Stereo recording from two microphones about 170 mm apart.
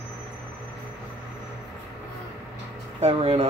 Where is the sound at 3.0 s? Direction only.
35° right (ahead or behind).